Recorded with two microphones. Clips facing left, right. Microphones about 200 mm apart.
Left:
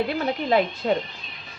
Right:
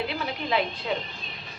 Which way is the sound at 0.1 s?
45° left (ahead or behind).